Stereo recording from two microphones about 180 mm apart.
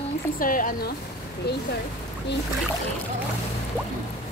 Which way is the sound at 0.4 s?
50° left (ahead or behind).